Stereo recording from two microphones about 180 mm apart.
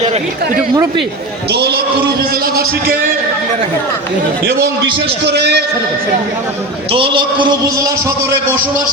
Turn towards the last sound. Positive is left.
turn(degrees=-25)  # may be behind; listen again after turning